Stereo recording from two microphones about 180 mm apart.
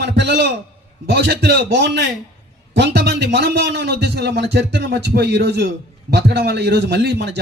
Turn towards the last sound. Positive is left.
turn(degrees=-70)  # may be behind; listen again after turning